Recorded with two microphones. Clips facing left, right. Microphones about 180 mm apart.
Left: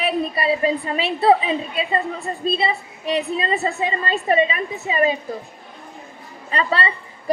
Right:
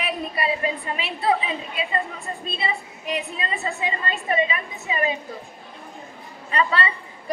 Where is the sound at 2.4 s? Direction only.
30° left (ahead or behind).